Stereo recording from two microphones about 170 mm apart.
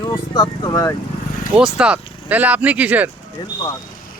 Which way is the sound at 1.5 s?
5° right (ahead or behind).